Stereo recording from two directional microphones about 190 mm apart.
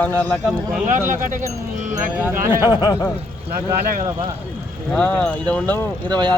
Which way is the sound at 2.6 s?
20° left (ahead or behind).